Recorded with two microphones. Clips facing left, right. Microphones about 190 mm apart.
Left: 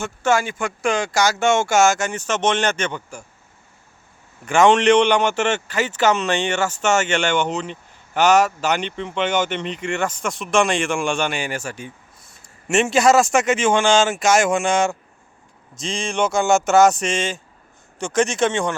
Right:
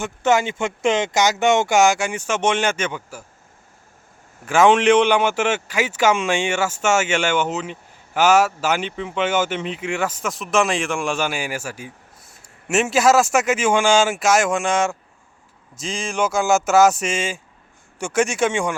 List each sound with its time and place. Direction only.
0.0 s a man's voice: 20° right (ahead or behind)
4.4 s a man's voice: 5° right (ahead or behind)